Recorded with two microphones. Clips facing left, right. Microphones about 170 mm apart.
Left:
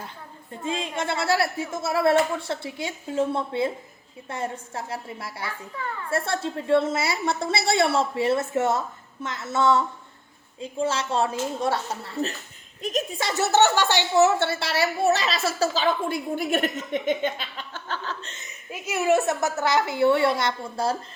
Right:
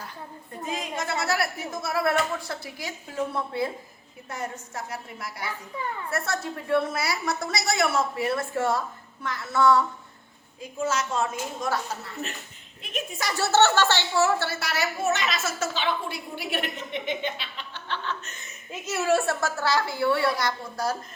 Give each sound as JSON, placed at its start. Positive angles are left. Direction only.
{"t": 0.6, "sound": "a woman's voice", "side_deg": 25}
{"t": 5.7, "sound": "a woman's voice", "side_deg": -20}
{"t": 6.1, "sound": "a woman's voice", "side_deg": 30}
{"t": 13.1, "sound": "a woman's voice", "side_deg": 25}
{"t": 18.4, "sound": "a woman's voice", "side_deg": 15}